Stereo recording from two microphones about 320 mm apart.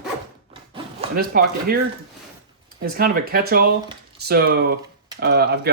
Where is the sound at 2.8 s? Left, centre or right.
Right.